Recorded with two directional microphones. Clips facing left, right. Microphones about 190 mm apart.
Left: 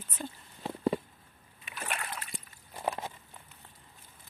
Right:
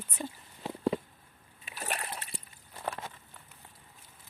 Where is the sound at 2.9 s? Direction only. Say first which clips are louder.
Left 4 dB; 20° left (ahead or behind).